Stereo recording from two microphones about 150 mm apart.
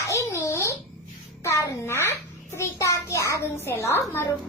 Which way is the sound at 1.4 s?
20° left (ahead or behind).